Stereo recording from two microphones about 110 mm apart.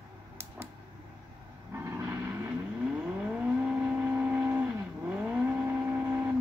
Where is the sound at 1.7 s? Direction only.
25° right (ahead or behind).